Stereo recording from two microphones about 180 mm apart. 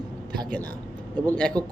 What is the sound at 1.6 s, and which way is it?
Speech, 25° right (ahead or behind).